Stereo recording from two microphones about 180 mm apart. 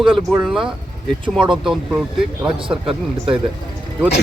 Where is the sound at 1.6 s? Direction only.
Centre (ahead or behind).